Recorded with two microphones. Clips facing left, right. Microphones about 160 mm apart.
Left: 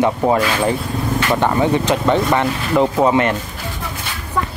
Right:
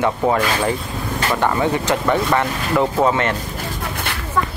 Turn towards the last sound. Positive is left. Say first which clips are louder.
# left 3 dB
turn(degrees=15)  # may be behind; listen again after turning